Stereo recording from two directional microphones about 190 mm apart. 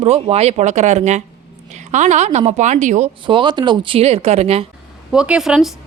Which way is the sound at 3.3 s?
25° right (ahead or behind).